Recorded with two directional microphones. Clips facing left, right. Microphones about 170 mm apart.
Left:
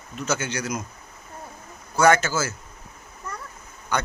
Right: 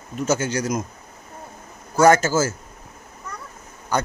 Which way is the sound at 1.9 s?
40° right (ahead or behind).